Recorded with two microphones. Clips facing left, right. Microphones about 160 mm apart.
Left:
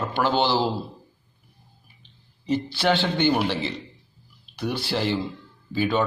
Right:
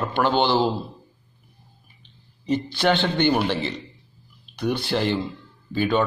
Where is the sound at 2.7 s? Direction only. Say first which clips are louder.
Right 2 dB; 5° left (ahead or behind).